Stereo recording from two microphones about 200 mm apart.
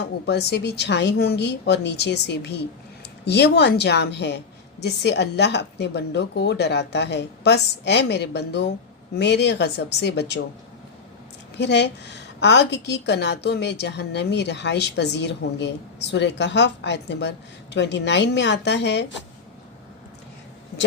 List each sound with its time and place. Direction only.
0.3 s a woman's voice: 55° left (ahead or behind)
11.5 s a woman's voice: 60° left (ahead or behind)